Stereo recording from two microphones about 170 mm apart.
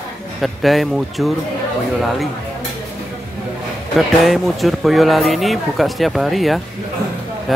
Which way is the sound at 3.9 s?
Centre (ahead or behind).